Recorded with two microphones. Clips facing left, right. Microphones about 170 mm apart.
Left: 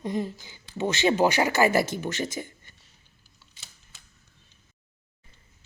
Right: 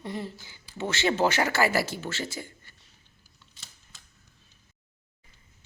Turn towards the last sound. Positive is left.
turn(degrees=0)  # may be behind; listen again after turning